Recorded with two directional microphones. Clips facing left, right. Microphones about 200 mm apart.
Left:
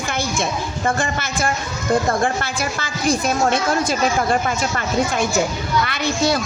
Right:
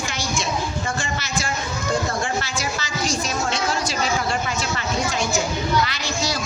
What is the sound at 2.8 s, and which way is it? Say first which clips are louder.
A woman's voice: left 9 dB; 55° left (ahead or behind).